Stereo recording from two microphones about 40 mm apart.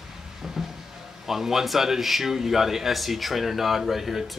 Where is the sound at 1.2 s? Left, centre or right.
Centre.